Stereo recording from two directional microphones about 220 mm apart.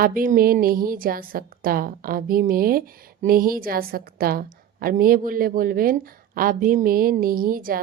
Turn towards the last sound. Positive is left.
turn(degrees=-40)  # may be behind; listen again after turning